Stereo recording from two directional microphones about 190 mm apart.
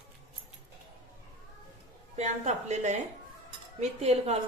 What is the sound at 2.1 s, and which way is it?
A woman's voice, 35° right (ahead or behind).